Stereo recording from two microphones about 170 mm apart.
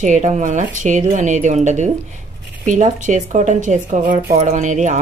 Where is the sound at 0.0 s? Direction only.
45° right (ahead or behind).